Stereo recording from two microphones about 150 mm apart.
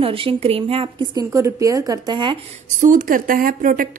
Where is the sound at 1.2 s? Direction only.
20° right (ahead or behind).